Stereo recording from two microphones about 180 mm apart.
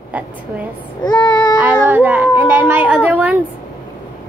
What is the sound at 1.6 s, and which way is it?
Speech, 10° right (ahead or behind).